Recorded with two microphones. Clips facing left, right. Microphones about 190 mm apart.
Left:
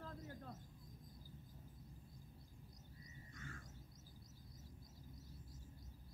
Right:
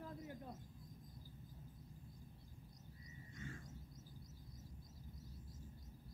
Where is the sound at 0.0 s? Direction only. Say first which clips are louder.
Right 2 dB; 15° right (ahead or behind).